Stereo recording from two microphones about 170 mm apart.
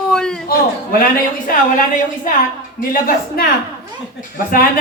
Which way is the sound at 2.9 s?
60° left (ahead or behind).